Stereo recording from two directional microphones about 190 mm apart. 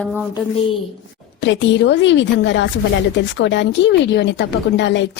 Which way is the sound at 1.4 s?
70° left (ahead or behind).